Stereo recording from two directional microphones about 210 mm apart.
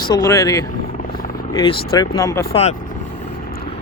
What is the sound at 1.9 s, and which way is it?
Speech, 15° left (ahead or behind).